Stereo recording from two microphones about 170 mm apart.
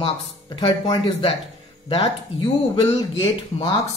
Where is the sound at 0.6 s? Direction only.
25° left (ahead or behind).